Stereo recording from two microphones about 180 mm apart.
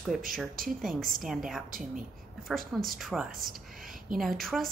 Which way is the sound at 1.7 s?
50° right (ahead or behind).